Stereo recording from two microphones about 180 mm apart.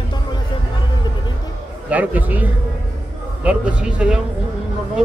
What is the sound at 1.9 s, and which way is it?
Speech, 10° right (ahead or behind).